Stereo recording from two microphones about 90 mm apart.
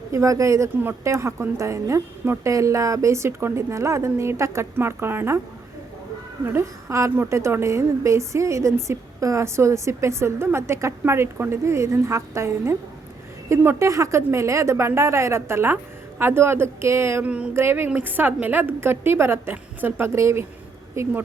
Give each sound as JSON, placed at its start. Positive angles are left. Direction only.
{"t": 0.1, "sound": "a woman's voice", "side_deg": -35}
{"t": 6.4, "sound": "a woman's voice", "side_deg": -25}
{"t": 13.7, "sound": "a woman's voice", "side_deg": -35}
{"t": 17.2, "sound": "speech", "side_deg": -15}
{"t": 17.5, "sound": "a woman's voice", "side_deg": -25}